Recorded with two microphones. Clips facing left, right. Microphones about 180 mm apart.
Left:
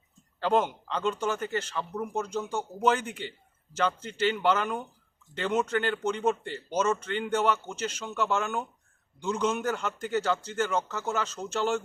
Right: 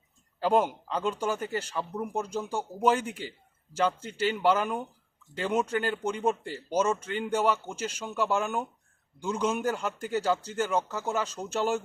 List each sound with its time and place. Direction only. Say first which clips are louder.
0.3 s a man's voice: right 1 dB; 10° right (ahead or behind)